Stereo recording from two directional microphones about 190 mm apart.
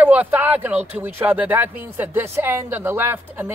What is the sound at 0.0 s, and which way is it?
A woman's voice, 10° right (ahead or behind).